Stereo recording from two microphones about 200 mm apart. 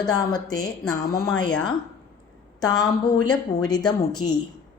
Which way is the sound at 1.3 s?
5° left (ahead or behind).